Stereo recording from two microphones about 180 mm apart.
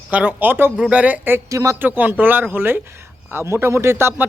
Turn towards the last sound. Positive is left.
turn(degrees=-15)  # may be behind; listen again after turning